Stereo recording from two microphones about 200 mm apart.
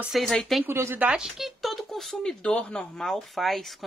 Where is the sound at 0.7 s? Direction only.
10° right (ahead or behind).